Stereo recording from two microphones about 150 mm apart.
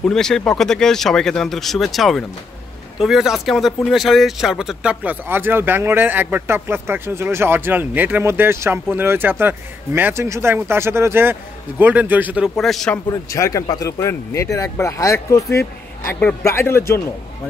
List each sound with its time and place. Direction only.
0.0 s speech: 5° left (ahead or behind)
12.5 s speech: centre (ahead or behind)
13.1 s a man's voice: 20° left (ahead or behind)